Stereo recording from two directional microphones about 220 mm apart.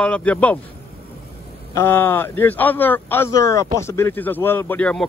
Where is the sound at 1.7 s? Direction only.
10° left (ahead or behind).